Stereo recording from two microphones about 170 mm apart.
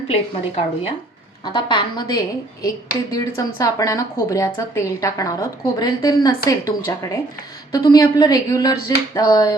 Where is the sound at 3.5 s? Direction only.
20° left (ahead or behind).